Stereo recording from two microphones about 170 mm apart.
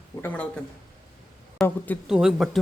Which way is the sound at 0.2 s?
10° left (ahead or behind).